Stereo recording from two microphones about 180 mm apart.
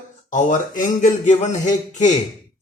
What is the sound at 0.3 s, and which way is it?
A man's voice, 45° left (ahead or behind).